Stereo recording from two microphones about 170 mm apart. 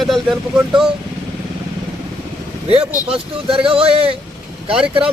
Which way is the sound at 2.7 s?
35° right (ahead or behind).